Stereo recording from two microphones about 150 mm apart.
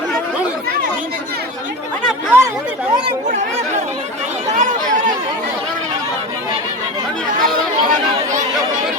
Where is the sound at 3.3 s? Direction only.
55° right (ahead or behind).